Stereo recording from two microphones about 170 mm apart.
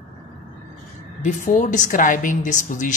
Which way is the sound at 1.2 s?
45° left (ahead or behind).